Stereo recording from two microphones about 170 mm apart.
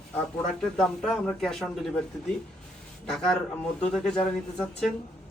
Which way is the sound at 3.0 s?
5° left (ahead or behind).